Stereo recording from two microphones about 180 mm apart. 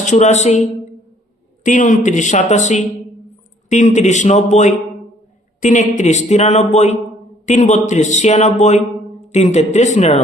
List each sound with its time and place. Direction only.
0.0 s speech: 40° left (ahead or behind)
1.6 s a woman's voice: 45° left (ahead or behind)